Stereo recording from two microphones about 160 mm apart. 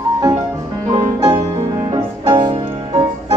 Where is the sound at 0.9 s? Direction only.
25° right (ahead or behind).